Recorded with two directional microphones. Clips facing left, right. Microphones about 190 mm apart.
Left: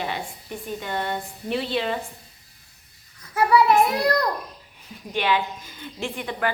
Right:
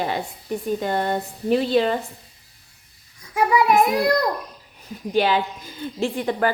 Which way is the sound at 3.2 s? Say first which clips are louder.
Even; 15° right (ahead or behind).